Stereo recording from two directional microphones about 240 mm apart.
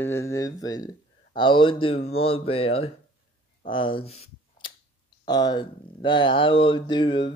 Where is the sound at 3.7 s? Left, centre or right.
Left.